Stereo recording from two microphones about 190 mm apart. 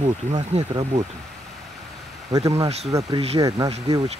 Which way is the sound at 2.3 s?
20° right (ahead or behind).